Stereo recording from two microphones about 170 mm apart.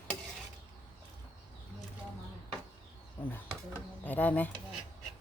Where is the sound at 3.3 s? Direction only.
10° left (ahead or behind).